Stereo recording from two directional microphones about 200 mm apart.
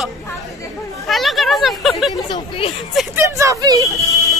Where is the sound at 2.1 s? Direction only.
25° left (ahead or behind).